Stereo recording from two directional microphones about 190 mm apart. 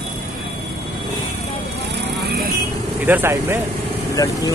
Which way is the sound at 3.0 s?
10° right (ahead or behind).